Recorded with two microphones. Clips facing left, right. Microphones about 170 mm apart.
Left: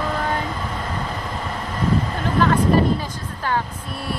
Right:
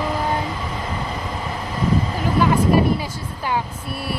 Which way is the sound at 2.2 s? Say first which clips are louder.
Even; 10° right (ahead or behind).